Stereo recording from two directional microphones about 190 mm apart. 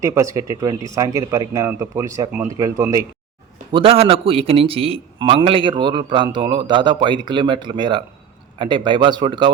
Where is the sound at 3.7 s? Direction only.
30° right (ahead or behind).